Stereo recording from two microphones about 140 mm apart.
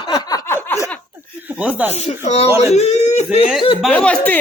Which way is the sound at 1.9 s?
50° left (ahead or behind).